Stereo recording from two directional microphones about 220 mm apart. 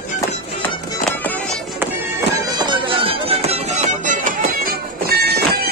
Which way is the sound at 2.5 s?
20° right (ahead or behind).